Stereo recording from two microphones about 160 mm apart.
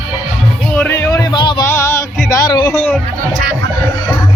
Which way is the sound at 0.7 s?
10° left (ahead or behind).